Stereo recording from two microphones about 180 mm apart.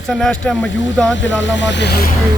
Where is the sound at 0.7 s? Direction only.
90° left; by 2.1 s 60° left (ahead or behind).